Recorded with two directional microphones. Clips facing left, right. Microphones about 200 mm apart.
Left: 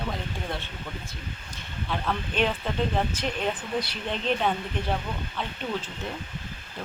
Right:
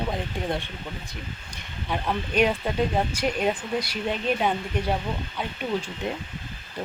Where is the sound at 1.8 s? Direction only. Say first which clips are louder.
Right 2 dB; 15° right (ahead or behind).